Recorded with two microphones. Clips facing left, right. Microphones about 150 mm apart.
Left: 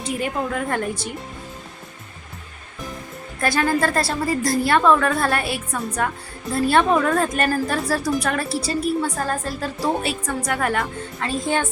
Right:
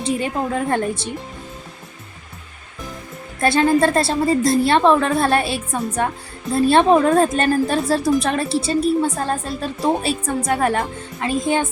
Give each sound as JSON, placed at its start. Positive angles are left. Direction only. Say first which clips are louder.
{"t": 0.0, "sound": "a woman's voice", "louder": "right 3 dB", "side_deg": -25}
{"t": 3.4, "sound": "a woman's voice", "louder": "right 5 dB", "side_deg": -25}
{"t": 11.3, "sound": "a woman's voice", "louder": "right 4 dB", "side_deg": -15}